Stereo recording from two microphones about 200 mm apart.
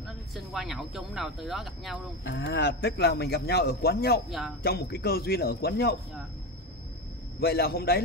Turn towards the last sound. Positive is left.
turn(degrees=50)  # may be behind; listen again after turning